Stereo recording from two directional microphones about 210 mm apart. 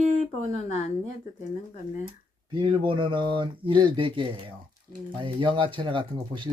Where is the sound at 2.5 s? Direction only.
25° right (ahead or behind).